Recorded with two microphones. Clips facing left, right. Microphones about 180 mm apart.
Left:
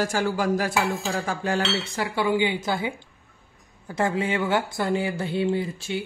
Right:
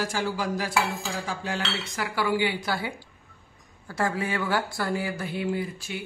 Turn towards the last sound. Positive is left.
turn(degrees=25)  # may be behind; listen again after turning